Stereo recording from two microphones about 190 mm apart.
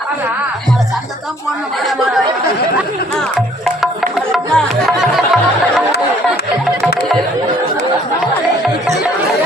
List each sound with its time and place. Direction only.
4.3 s music: centre (ahead or behind)